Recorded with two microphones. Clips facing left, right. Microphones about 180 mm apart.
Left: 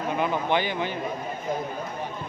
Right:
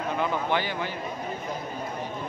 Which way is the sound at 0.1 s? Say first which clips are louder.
Left 2 dB; 15° left (ahead or behind).